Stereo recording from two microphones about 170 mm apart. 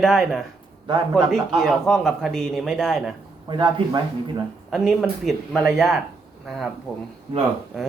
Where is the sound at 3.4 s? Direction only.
25° right (ahead or behind).